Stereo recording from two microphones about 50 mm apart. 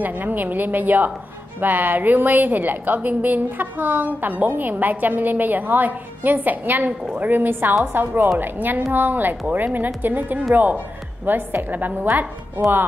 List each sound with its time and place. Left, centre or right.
0.0 s a woman's voice: right